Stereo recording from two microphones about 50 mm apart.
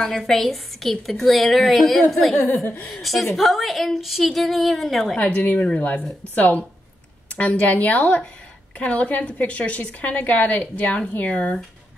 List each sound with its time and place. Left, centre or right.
0.2 s a woman's voice: centre
2.6 s a woman's voice: left
2.9 s a woman's voice: centre
5.1 s a woman's voice: left